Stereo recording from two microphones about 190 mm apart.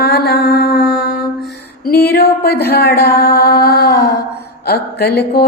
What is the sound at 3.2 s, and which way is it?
Mantra, 55° left (ahead or behind).